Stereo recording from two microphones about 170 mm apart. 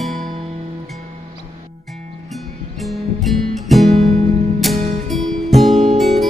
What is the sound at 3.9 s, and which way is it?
Music, 40° right (ahead or behind).